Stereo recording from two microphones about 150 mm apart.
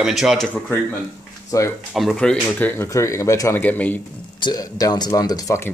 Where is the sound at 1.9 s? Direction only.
5° left (ahead or behind).